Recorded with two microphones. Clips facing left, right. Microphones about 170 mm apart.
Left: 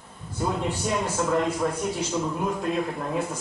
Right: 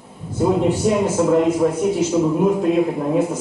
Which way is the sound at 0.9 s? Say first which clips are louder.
Right 7 dB; 10° right (ahead or behind).